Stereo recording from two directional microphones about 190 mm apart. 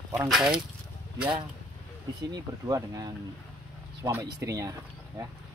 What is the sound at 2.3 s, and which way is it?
Speech, 20° right (ahead or behind).